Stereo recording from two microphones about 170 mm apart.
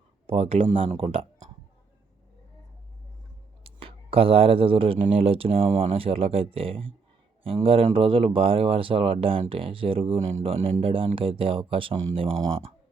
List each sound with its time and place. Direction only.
0.3 s speech: 35° right (ahead or behind)
3.6 s speech: 35° right (ahead or behind)